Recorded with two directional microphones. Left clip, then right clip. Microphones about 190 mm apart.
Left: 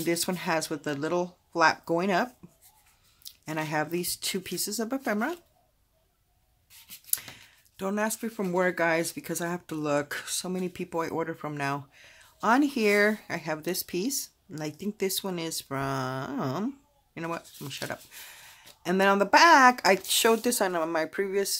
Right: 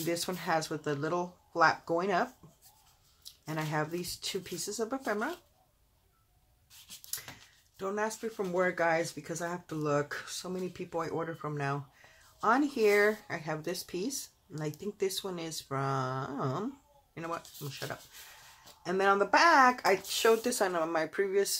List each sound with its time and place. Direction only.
0.0 s speech: 40° left (ahead or behind)
3.3 s speech: 40° left (ahead or behind)
7.1 s a sound: 50° left (ahead or behind)
7.7 s speech: 50° left (ahead or behind)